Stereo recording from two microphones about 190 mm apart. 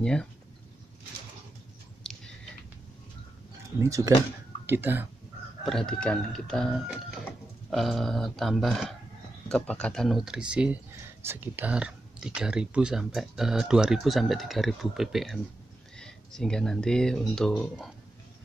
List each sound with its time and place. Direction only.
0.0 s speech: 5° left (ahead or behind)
2.0 s a sound: 5° left (ahead or behind)
3.8 s speech: 15° right (ahead or behind)
5.7 s speech: 5° left (ahead or behind)